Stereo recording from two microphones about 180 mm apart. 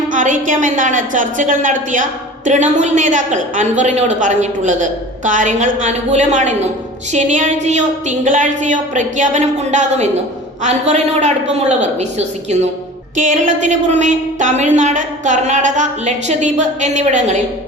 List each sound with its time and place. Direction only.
0.1 s a woman's voice: 45° right (ahead or behind)